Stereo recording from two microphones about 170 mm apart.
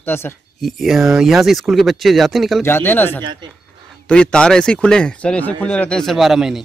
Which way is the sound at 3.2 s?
25° right (ahead or behind).